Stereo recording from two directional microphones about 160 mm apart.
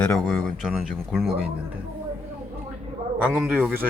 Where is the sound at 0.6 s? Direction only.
Centre (ahead or behind).